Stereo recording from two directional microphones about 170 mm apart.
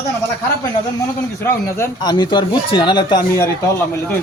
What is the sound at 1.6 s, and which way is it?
Speech, 15° left (ahead or behind).